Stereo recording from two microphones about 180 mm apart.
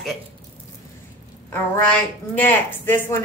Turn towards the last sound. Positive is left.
turn(degrees=10)  # may be behind; listen again after turning